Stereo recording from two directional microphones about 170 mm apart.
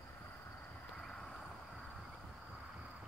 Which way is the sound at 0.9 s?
5° left (ahead or behind).